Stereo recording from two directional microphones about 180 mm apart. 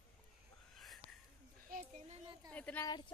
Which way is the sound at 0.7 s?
Centre (ahead or behind).